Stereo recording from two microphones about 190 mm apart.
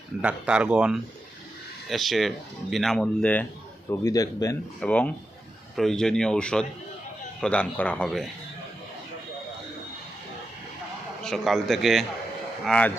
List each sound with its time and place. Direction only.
0.2 s a man's voice: 5° right (ahead or behind); by 4.5 s 20° left (ahead or behind)
4.8 s a man's voice: 5° left (ahead or behind)
11.2 s speech: centre (ahead or behind)